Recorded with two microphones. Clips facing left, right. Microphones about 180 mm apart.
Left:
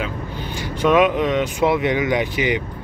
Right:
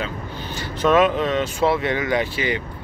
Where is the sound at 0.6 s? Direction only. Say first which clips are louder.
Left 1 dB; 10° left (ahead or behind).